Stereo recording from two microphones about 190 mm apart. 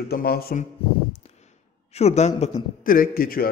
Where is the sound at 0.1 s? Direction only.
55° left (ahead or behind).